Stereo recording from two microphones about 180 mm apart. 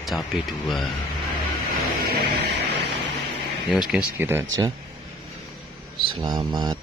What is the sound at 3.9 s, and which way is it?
Speech, 10° right (ahead or behind).